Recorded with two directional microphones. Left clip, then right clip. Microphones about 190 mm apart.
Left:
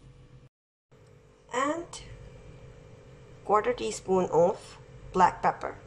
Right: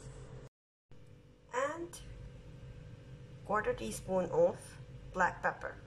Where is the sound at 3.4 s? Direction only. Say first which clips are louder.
Left 9 dB; 15° left (ahead or behind).